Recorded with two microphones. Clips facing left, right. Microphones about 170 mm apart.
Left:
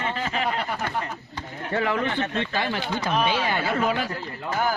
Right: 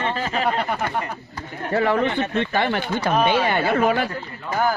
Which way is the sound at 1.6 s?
40° right (ahead or behind).